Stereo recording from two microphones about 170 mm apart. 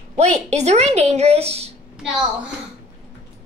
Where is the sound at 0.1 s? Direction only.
40° right (ahead or behind).